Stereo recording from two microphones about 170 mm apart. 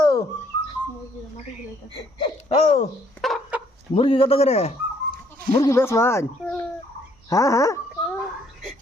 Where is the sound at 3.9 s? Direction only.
30° left (ahead or behind).